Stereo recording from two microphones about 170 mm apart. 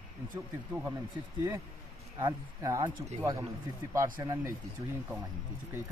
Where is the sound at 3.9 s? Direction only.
20° right (ahead or behind).